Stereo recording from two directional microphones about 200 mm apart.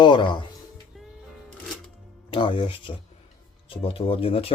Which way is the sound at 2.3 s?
25° left (ahead or behind).